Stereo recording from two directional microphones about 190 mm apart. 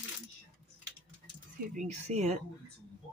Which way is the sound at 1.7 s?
40° right (ahead or behind).